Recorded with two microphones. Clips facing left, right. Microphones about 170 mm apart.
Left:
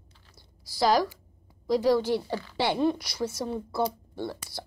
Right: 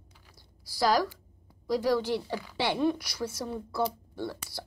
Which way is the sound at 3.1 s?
20° left (ahead or behind).